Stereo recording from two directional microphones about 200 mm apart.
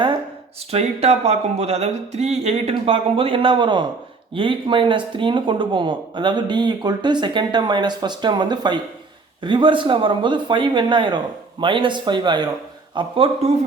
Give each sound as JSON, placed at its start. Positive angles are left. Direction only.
{"t": 0.7, "sound": "speech", "side_deg": -30}